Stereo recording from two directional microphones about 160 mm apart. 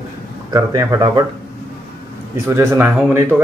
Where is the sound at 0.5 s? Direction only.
20° right (ahead or behind).